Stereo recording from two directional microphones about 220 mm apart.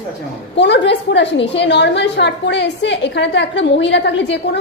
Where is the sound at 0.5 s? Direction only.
50° left (ahead or behind).